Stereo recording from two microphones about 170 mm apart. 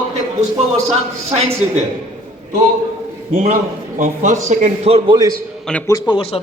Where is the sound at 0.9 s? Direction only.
40° right (ahead or behind).